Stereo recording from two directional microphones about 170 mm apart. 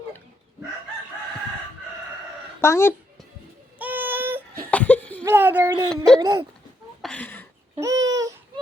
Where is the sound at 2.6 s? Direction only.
15° left (ahead or behind).